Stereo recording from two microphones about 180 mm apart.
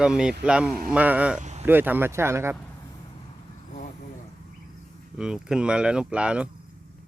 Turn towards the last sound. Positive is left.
turn(degrees=-5)  # may be behind; listen again after turning